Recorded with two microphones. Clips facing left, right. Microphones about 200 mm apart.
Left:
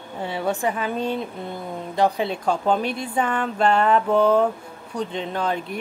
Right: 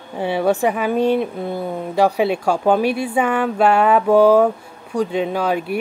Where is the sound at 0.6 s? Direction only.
10° right (ahead or behind).